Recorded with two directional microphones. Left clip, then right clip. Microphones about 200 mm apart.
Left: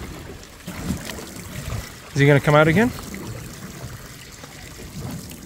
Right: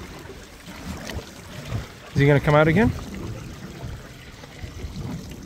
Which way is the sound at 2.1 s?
10° left (ahead or behind).